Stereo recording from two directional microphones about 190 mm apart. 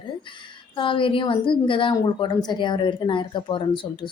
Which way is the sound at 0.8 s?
25° left (ahead or behind).